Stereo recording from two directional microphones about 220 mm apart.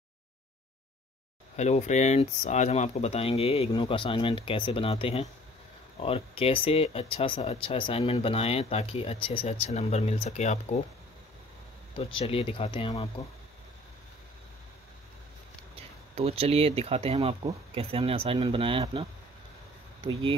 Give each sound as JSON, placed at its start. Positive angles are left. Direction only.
{"t": 1.6, "sound": "speech", "side_deg": 30}
{"t": 12.2, "sound": "speech", "side_deg": 25}
{"t": 15.7, "sound": "speech", "side_deg": -25}